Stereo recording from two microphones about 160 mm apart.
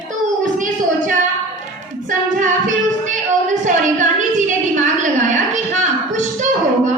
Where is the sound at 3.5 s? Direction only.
50° right (ahead or behind).